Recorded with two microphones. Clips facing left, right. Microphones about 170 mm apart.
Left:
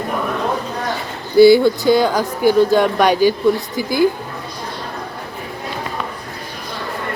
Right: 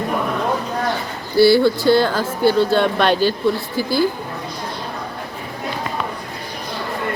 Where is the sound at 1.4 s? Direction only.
15° left (ahead or behind).